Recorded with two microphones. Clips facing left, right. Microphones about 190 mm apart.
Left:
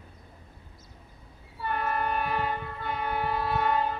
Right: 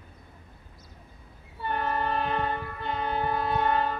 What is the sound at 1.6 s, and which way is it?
Train, 30° right (ahead or behind).